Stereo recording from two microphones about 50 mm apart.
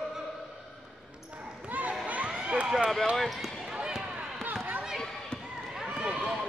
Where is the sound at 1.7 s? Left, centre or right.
Right.